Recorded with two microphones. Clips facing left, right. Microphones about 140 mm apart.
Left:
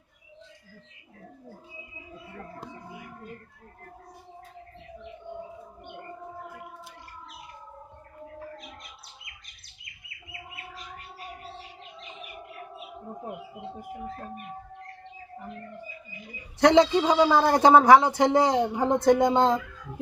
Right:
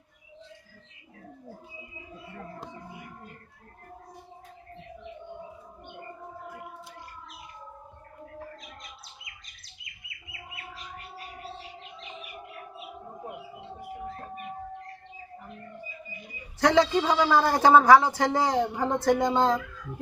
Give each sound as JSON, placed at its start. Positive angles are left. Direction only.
{"t": 9.2, "sound": "chirp", "side_deg": 55}
{"t": 16.6, "sound": "speech", "side_deg": 20}